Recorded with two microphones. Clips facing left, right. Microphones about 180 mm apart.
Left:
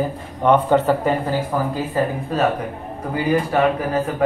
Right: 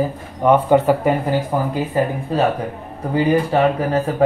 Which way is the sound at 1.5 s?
25° right (ahead or behind).